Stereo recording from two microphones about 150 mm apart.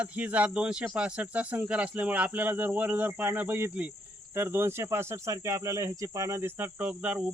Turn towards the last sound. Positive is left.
turn(degrees=-10)  # may be behind; listen again after turning